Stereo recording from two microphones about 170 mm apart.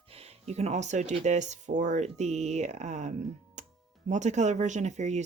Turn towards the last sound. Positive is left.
turn(degrees=-45)  # may be behind; listen again after turning